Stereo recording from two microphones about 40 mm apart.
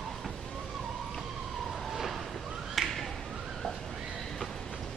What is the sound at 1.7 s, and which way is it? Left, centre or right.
Police car, centre.